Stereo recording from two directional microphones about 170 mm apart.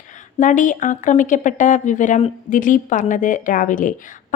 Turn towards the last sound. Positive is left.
turn(degrees=50)  # may be behind; listen again after turning